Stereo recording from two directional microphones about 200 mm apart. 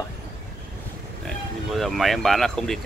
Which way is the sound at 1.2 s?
Centre (ahead or behind).